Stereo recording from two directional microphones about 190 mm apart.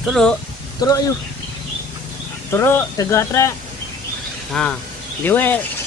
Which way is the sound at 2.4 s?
15° left (ahead or behind).